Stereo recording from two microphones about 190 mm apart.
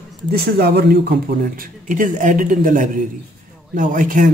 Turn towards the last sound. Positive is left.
turn(degrees=-45)  # may be behind; listen again after turning